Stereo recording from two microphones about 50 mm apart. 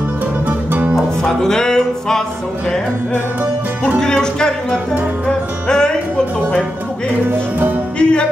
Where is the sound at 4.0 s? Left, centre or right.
Centre.